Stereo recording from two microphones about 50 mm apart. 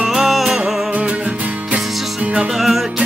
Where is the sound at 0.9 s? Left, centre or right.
Right.